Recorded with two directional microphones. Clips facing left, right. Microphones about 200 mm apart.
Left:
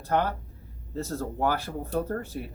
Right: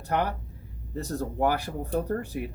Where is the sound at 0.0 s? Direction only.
15° right (ahead or behind).